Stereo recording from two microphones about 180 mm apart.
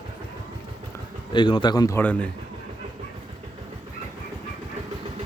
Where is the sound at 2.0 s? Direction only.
10° left (ahead or behind).